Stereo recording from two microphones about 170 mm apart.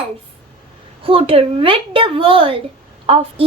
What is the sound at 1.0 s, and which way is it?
A woman's voice, 30° right (ahead or behind).